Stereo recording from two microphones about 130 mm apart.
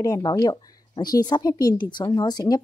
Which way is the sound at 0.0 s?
30° left (ahead or behind).